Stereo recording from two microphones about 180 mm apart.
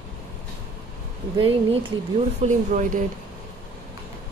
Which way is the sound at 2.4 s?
45° right (ahead or behind).